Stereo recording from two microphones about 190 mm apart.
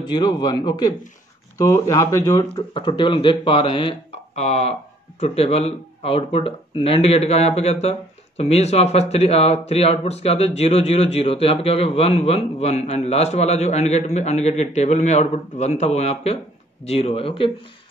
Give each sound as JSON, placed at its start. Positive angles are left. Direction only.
{"t": 0.1, "sound": "speech", "side_deg": 20}